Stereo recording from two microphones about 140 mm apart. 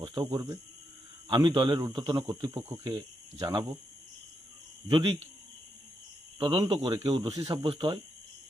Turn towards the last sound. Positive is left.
turn(degrees=-40)  # may be behind; listen again after turning